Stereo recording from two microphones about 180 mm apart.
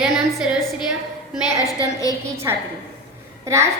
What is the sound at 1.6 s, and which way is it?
Speech, 20° left (ahead or behind).